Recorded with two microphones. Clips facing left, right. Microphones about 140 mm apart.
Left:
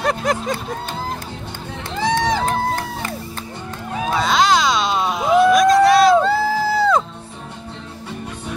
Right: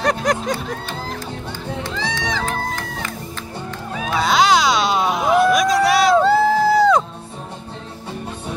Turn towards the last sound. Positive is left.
turn(degrees=0)  # may be behind; listen again after turning